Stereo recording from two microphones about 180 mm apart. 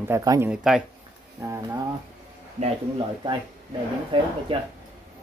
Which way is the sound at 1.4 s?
15° right (ahead or behind).